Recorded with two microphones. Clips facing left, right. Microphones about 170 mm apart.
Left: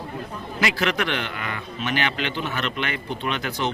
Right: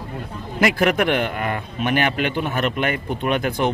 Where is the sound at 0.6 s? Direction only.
50° right (ahead or behind).